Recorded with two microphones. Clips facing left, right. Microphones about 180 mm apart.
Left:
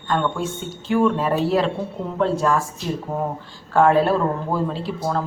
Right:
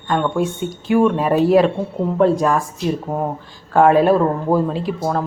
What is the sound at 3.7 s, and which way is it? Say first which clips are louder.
Speech: right 4 dB; 15° right (ahead or behind).